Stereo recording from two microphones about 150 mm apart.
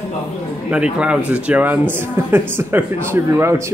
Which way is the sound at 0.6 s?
5° right (ahead or behind).